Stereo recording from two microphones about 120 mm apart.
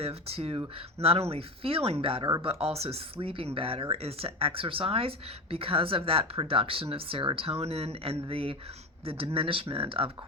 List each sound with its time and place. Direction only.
0.0 s speech: 55° right (ahead or behind)